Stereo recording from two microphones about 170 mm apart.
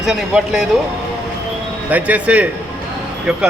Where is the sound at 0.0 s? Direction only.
5° right (ahead or behind).